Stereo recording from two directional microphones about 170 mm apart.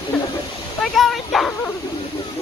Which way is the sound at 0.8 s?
Centre (ahead or behind).